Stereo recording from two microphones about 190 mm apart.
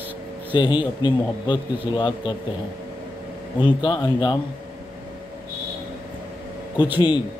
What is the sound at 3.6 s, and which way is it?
Speech, 25° left (ahead or behind).